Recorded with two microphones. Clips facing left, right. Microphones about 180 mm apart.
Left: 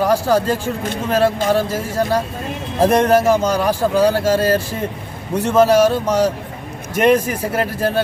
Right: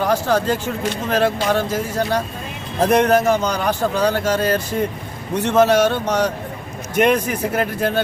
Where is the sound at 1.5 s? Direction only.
30° left (ahead or behind).